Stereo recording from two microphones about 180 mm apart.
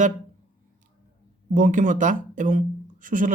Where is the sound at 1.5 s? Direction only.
50° right (ahead or behind).